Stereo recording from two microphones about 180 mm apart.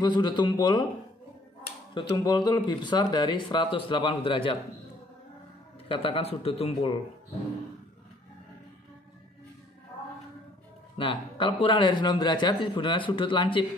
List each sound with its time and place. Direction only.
0.0 s speech: 25° left (ahead or behind)
2.0 s speech: 25° left (ahead or behind)
5.9 s a man's voice: 30° left (ahead or behind)
11.0 s speech: 30° left (ahead or behind)